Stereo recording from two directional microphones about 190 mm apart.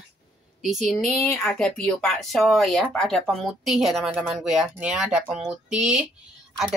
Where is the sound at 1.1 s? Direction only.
10° left (ahead or behind).